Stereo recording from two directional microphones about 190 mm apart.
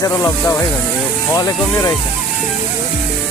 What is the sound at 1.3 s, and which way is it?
Speech, 20° left (ahead or behind).